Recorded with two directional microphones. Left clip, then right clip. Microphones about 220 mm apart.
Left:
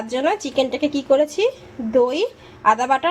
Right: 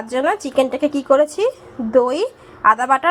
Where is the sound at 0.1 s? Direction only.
15° right (ahead or behind).